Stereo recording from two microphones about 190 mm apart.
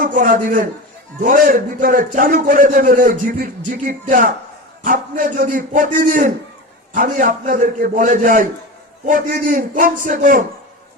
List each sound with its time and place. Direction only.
0.0 s a man's voice: 45° right (ahead or behind)